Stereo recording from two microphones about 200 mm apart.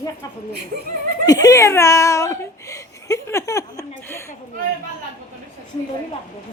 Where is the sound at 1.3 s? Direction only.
15° left (ahead or behind).